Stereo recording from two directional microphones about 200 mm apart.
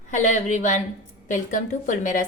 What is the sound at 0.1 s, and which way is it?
A woman's voice, 35° left (ahead or behind).